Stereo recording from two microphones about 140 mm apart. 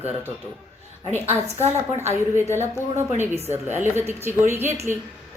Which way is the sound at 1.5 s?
15° right (ahead or behind).